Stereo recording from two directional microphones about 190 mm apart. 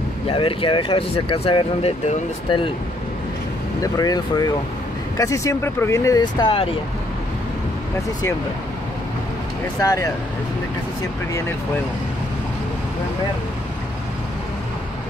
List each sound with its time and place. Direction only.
0.3 s speech: 30° left (ahead or behind)
3.8 s speech: 20° left (ahead or behind)
9.8 s speech: 20° left (ahead or behind)